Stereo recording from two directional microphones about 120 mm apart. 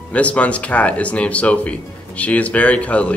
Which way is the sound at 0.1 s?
10° left (ahead or behind).